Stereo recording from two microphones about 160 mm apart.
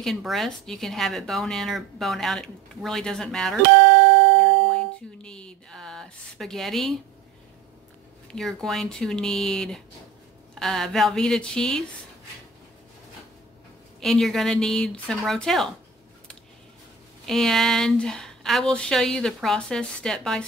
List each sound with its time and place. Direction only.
0.0 s speech: centre (ahead or behind)
3.7 s music: 90° right
4.7 s music: 5° left (ahead or behind)
8.3 s speech: centre (ahead or behind)
14.0 s speech: centre (ahead or behind)
17.3 s speech: centre (ahead or behind)